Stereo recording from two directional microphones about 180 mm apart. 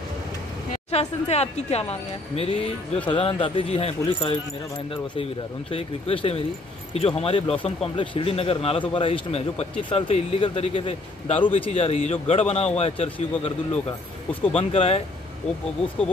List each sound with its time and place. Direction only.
0.9 s speech: 35° left (ahead or behind)
5.7 s speech: 30° left (ahead or behind)
14.5 s speech: 35° left (ahead or behind)